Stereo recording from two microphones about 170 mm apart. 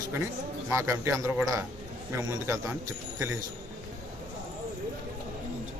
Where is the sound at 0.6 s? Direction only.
15° right (ahead or behind).